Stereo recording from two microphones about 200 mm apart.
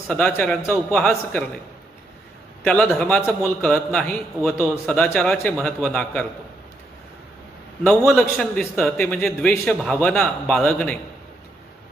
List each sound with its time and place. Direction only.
0.1 s a man's voice: 5° left (ahead or behind)
2.6 s a man's voice: 5° left (ahead or behind)
7.9 s a man's voice: 5° left (ahead or behind)